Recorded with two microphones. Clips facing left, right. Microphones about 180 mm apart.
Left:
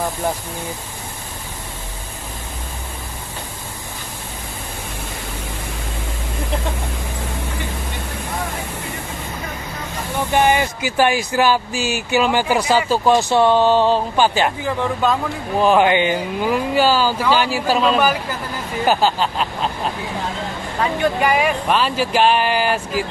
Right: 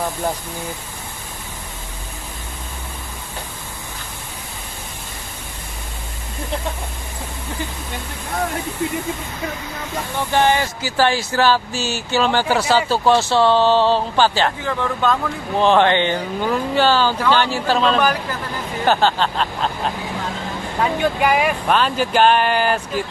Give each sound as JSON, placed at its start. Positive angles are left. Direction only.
{"t": 10.3, "sound": "speech", "side_deg": 15}
{"t": 20.8, "sound": "speech", "side_deg": 0}